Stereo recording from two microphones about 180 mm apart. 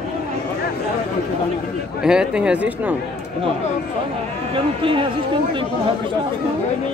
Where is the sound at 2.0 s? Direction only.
5° right (ahead or behind).